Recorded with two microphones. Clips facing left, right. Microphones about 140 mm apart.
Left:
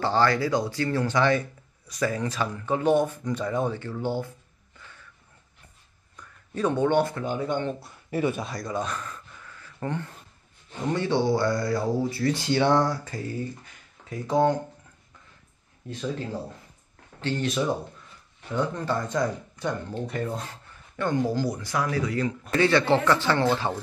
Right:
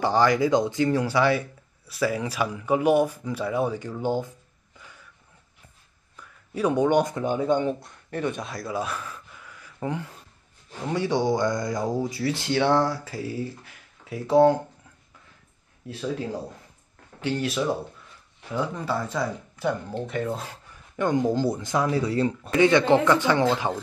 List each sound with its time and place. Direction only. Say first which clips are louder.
0.0 s speech: right 2 dB; 15° right (ahead or behind)
4.7 s a sound: right 1 dB; 10° right (ahead or behind)
6.1 s speech: right 1 dB; 10° right (ahead or behind)
7.8 s speech: left 2 dB; 5° left (ahead or behind)
15.9 s speech: right 2 dB; 5° right (ahead or behind)
20.9 s speech: right 3 dB; 15° right (ahead or behind)
22.6 s speech: right 3 dB; 20° right (ahead or behind)